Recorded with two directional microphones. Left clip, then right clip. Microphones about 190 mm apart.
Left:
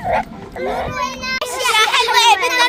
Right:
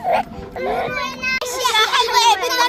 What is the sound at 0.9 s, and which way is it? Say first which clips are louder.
Children playing: left 2 dB; 90° left.